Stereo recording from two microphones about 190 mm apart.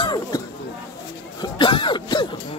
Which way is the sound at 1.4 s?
25° left (ahead or behind).